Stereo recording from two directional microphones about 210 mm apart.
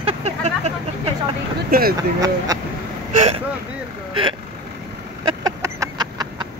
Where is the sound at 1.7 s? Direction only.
45° right (ahead or behind).